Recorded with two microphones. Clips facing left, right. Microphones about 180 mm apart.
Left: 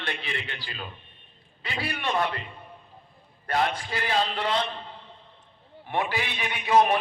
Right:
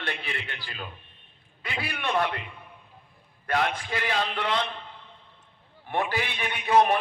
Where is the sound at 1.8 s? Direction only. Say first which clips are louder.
Even; 55° right (ahead or behind).